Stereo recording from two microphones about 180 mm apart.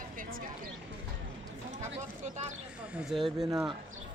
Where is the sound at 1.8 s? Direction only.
40° right (ahead or behind).